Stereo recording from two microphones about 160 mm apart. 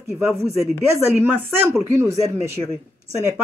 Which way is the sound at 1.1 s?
15° right (ahead or behind).